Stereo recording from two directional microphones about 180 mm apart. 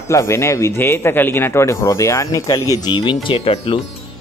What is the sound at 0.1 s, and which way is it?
Speech, 15° left (ahead or behind).